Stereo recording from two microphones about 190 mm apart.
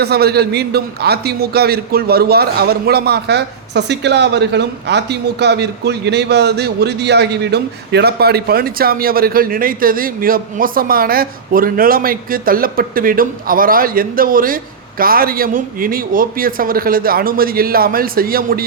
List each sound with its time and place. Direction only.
0.0 s a man's voice: 55° right (ahead or behind)